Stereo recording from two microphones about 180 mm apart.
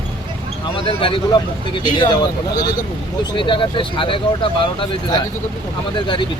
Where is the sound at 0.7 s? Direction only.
30° left (ahead or behind).